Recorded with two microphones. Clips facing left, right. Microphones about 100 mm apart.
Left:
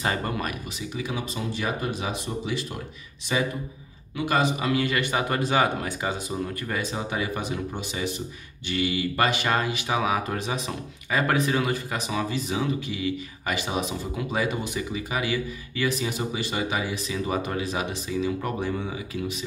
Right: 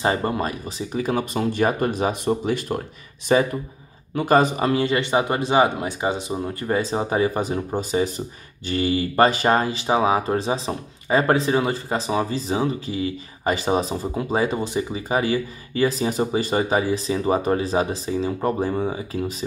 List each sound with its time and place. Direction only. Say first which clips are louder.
0.0 s speech: right 6 dB; 25° right (ahead or behind)
0.9 s speech: right 9 dB; 50° right (ahead or behind)